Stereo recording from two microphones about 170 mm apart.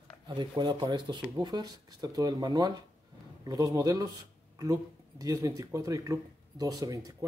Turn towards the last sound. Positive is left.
turn(degrees=-20)  # may be behind; listen again after turning